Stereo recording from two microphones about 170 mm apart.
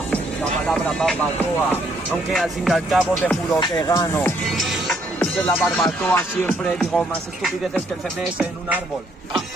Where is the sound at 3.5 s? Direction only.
20° left (ahead or behind).